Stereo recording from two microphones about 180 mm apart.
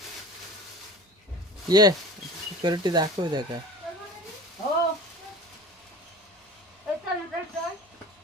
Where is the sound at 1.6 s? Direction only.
20° right (ahead or behind).